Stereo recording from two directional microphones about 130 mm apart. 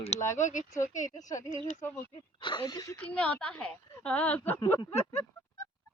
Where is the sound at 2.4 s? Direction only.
35° left (ahead or behind).